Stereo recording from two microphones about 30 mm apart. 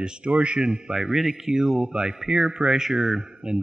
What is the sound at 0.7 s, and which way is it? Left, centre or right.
Speech, centre.